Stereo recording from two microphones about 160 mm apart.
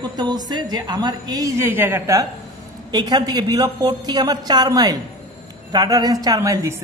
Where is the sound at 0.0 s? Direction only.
25° right (ahead or behind).